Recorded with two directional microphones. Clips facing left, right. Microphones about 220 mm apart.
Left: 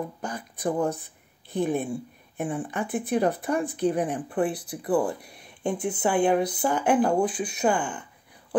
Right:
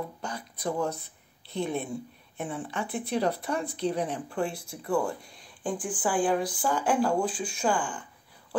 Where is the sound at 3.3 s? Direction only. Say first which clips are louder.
Left 5 dB; 15° left (ahead or behind).